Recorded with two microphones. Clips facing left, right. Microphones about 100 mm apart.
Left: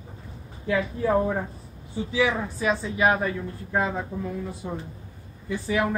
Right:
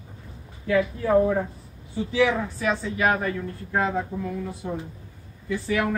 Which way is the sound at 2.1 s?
20° left (ahead or behind).